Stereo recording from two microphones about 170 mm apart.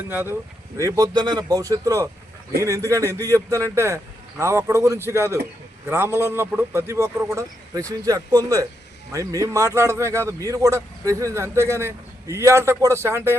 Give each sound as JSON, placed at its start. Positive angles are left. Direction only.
{"t": 0.1, "sound": "a man's voice", "side_deg": -10}
{"t": 0.8, "sound": "a man's voice", "side_deg": -20}